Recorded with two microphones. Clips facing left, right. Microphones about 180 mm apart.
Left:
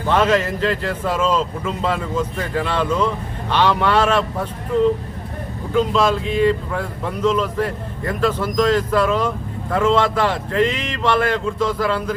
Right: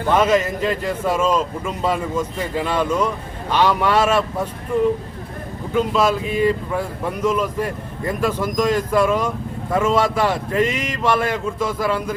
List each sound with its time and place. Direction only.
0.1 s speech: 10° right (ahead or behind)
5.7 s speech: 5° right (ahead or behind)